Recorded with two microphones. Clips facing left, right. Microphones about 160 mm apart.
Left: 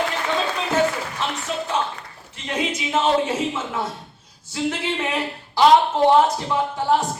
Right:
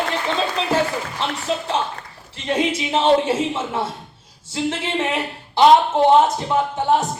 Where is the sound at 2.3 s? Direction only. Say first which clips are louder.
Right 5 dB; 30° right (ahead or behind).